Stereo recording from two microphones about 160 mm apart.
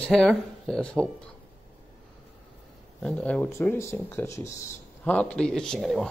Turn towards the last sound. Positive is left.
turn(degrees=0)  # may be behind; listen again after turning